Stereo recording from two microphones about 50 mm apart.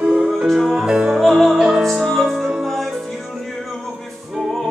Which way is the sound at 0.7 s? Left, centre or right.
Centre.